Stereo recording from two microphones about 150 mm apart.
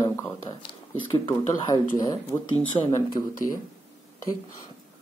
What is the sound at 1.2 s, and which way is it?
Speech, 30° left (ahead or behind).